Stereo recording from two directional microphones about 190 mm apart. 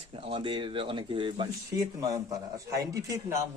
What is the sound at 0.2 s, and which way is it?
A man's voice, 25° right (ahead or behind).